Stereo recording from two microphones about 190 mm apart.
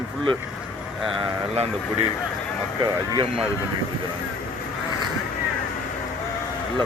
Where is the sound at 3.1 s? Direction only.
25° right (ahead or behind).